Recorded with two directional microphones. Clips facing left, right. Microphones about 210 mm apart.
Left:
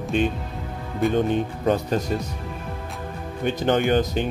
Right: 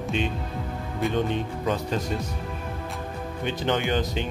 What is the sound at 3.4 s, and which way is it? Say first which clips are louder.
Speech: left 5 dB; 45° left (ahead or behind).